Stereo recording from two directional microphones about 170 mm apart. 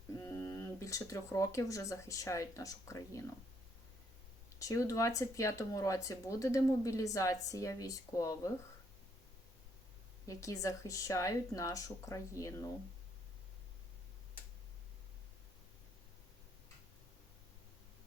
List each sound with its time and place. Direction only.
0.1 s speech: 20° left (ahead or behind)
4.6 s speech: 20° left (ahead or behind)
10.2 s speech: 20° left (ahead or behind)